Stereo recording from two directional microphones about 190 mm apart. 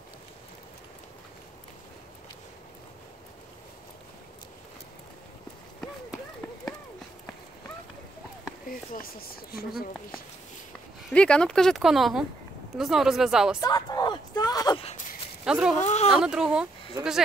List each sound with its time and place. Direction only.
8.6 s speech: 50° left (ahead or behind)
11.1 s speech: 5° left (ahead or behind)
13.6 s a sound: 20° left (ahead or behind)
14.8 s a sound: 35° left (ahead or behind)
15.4 s speech: 5° right (ahead or behind)
15.8 s speech: 35° left (ahead or behind)
16.1 s speech: 5° right (ahead or behind)